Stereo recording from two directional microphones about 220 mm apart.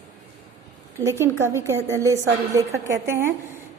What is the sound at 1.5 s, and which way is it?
A woman's voice, 10° right (ahead or behind).